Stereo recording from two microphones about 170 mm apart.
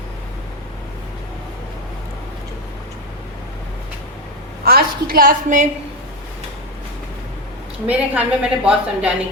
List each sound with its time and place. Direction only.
4.6 s a woman's voice: 60° right (ahead or behind)
7.9 s a woman's voice: 10° right (ahead or behind)